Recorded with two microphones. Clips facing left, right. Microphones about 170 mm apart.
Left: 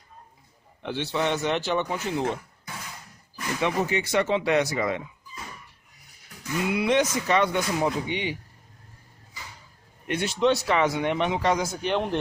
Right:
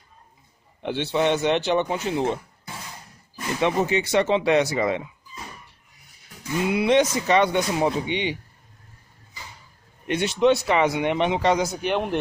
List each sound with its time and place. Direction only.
1.1 s speech: 20° right (ahead or behind)
6.4 s speech: 25° right (ahead or behind)
10.0 s speech: 20° right (ahead or behind)